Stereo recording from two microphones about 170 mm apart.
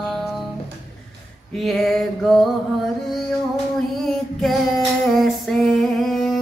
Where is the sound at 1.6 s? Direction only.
Centre (ahead or behind).